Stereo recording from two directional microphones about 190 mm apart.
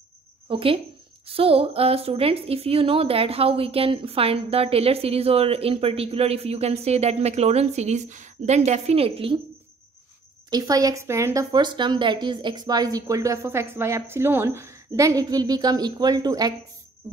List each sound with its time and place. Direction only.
0.5 s a woman's voice: 30° right (ahead or behind)
10.5 s speech: 20° right (ahead or behind)